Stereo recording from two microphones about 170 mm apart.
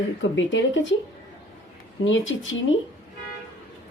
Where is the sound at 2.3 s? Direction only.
90° left.